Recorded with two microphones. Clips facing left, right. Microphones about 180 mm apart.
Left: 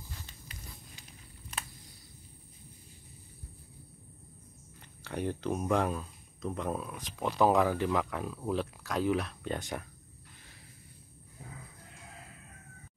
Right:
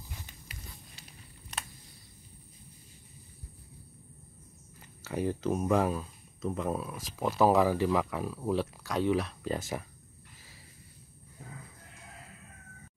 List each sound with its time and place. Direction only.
0.1 s biting: 15° right (ahead or behind)
5.0 s speech: 5° right (ahead or behind)